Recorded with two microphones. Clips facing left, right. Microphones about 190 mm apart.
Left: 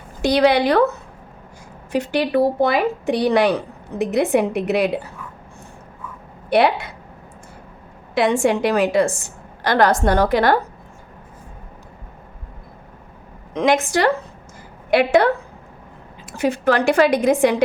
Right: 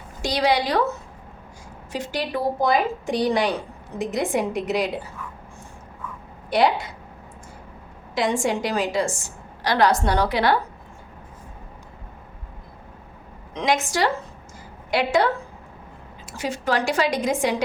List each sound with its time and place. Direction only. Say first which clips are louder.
0.2 s a woman's voice: left 6 dB; 55° left (ahead or behind)
6.5 s a woman's voice: left 3 dB; 60° left (ahead or behind)
8.1 s a woman's voice: left 5 dB; 60° left (ahead or behind)
13.5 s a woman's voice: left 6 dB; 55° left (ahead or behind)
16.4 s a woman's voice: left 6 dB; 60° left (ahead or behind)